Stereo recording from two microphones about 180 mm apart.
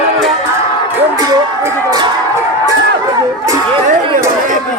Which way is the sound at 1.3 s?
20° right (ahead or behind).